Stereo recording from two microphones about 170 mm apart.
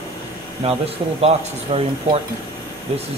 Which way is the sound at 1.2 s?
35° right (ahead or behind).